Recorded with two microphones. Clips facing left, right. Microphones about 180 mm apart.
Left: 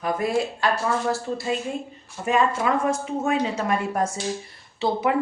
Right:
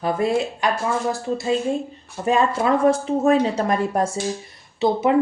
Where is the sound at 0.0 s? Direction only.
25° right (ahead or behind).